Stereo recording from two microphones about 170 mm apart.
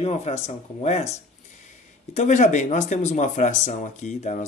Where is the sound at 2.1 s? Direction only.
45° left (ahead or behind).